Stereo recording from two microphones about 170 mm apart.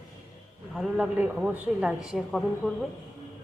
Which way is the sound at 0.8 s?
5° right (ahead or behind).